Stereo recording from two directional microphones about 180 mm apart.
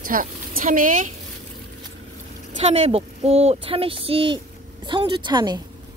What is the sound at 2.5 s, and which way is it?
A woman's voice, 35° right (ahead or behind).